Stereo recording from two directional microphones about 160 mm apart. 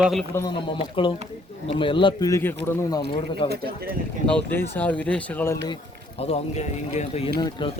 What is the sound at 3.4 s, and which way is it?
Speech, 75° right (ahead or behind).